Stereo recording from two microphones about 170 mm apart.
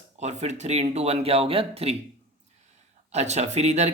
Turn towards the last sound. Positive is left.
turn(degrees=-40)  # may be behind; listen again after turning